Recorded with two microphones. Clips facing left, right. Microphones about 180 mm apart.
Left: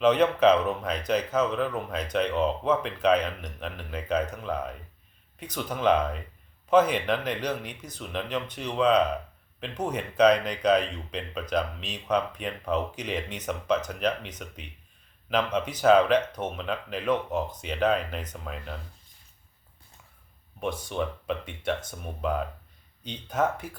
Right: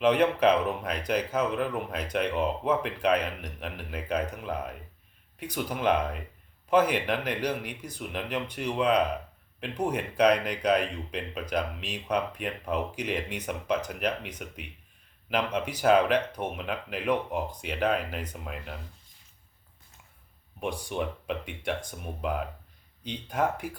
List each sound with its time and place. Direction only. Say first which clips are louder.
0.0 s speech: left 2 dB; 10° right (ahead or behind)
20.6 s speech: left 1 dB; 15° right (ahead or behind)